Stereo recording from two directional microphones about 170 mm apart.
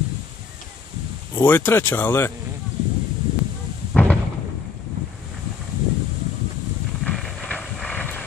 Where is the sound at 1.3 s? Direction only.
10° left (ahead or behind).